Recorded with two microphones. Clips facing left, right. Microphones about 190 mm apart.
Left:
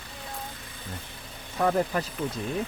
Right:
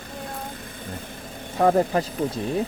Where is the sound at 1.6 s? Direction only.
30° right (ahead or behind).